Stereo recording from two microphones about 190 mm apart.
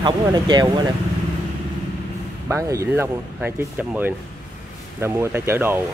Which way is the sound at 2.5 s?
15° right (ahead or behind).